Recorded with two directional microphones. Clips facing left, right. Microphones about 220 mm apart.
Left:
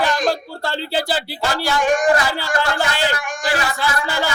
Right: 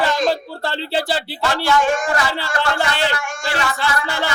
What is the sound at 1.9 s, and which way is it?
Speech, 15° left (ahead or behind).